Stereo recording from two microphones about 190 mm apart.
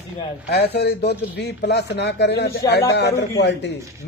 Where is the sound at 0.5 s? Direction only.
60° left (ahead or behind).